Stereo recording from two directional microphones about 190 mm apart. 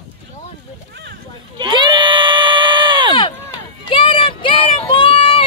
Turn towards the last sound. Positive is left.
turn(degrees=30)  # may be behind; listen again after turning